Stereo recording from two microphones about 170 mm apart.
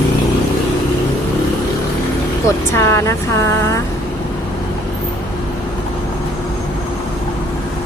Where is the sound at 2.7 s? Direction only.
15° left (ahead or behind).